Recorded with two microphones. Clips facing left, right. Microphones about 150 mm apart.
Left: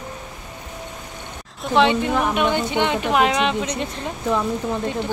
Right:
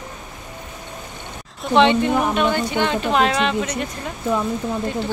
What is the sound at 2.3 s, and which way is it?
Speech, 20° left (ahead or behind).